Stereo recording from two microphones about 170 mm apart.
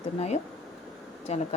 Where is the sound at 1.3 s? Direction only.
40° left (ahead or behind).